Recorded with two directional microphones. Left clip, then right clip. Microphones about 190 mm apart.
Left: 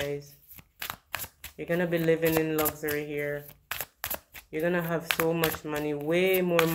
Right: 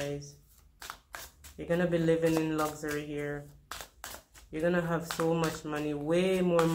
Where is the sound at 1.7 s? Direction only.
25° left (ahead or behind).